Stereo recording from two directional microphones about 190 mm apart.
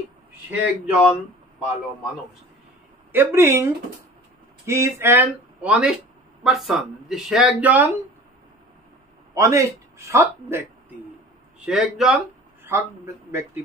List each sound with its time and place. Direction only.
0.3 s speech: 10° right (ahead or behind)
3.1 s a man's voice: 10° right (ahead or behind)
9.3 s a man's voice: 15° right (ahead or behind)
11.6 s speech: centre (ahead or behind)
12.6 s a man's voice: 15° right (ahead or behind)